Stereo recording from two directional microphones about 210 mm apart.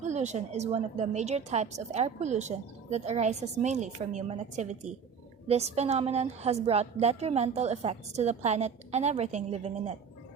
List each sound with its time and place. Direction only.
0.1 s a woman's voice: 35° right (ahead or behind)